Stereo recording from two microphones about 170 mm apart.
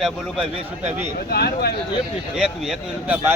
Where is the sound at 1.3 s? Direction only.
70° left (ahead or behind).